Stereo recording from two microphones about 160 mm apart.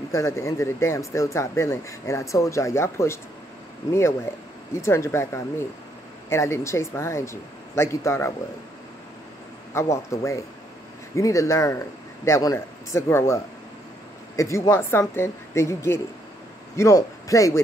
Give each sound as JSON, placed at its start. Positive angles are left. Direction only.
{"t": 0.1, "sound": "speech", "side_deg": 20}
{"t": 4.3, "sound": "speech", "side_deg": 15}
{"t": 9.8, "sound": "speech", "side_deg": 20}